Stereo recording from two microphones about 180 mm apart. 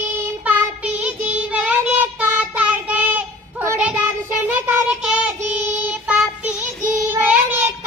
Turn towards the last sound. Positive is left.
turn(degrees=-10)  # may be behind; listen again after turning